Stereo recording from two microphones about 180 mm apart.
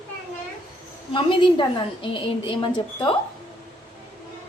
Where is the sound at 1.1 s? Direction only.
25° left (ahead or behind).